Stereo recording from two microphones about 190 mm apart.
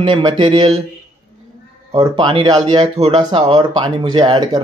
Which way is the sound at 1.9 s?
20° right (ahead or behind).